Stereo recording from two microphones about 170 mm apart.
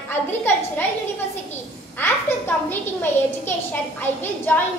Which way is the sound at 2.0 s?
10° left (ahead or behind).